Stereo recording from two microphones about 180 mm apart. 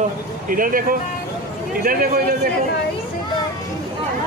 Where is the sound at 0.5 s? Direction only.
50° right (ahead or behind).